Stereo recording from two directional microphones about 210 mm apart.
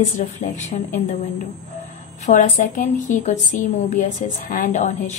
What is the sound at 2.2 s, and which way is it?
A woman's voice, 35° left (ahead or behind).